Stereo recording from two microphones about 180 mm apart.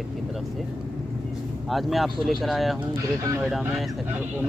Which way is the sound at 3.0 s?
15° right (ahead or behind).